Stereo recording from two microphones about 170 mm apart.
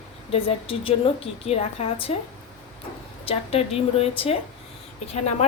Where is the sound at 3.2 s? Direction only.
35° left (ahead or behind).